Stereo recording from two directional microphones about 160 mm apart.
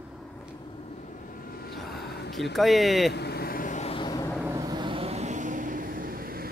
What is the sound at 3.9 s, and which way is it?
Vehicle, 25° left (ahead or behind).